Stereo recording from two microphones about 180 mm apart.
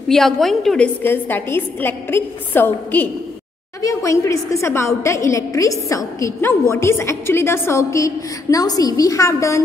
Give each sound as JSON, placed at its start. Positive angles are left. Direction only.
{"t": 0.1, "sound": "a woman's voice", "side_deg": 0}